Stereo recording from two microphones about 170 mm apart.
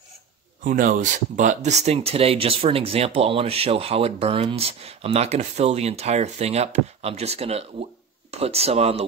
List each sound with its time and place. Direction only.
0.7 s speech: 50° right (ahead or behind)